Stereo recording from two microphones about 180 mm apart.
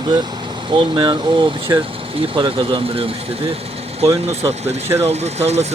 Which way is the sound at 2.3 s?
25° right (ahead or behind).